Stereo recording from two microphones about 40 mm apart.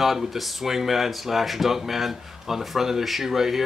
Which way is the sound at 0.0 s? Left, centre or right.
Centre.